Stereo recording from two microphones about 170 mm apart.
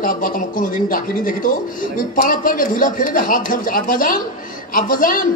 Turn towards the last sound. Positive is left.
turn(degrees=55)  # may be behind; listen again after turning